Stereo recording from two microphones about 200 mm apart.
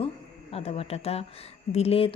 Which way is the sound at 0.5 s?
30° left (ahead or behind).